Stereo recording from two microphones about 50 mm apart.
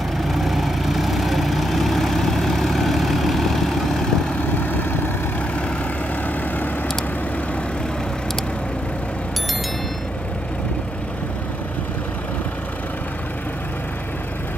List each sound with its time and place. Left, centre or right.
0.2 s vehicle: centre
4.4 s vehicle: left